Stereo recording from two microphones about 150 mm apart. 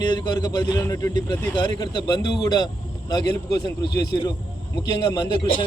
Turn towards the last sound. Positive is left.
turn(degrees=30)  # may be behind; listen again after turning